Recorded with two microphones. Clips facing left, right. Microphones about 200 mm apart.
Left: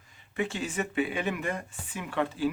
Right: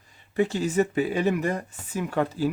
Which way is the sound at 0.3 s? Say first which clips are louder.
Right 8 dB; 40° right (ahead or behind).